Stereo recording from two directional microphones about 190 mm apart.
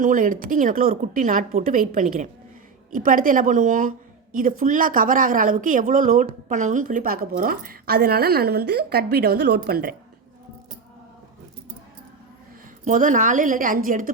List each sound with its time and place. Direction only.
0.0 s speech: 45° right (ahead or behind)
12.8 s speech: 45° right (ahead or behind)